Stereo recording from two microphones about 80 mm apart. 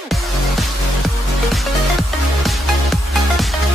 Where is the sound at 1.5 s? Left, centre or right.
Centre.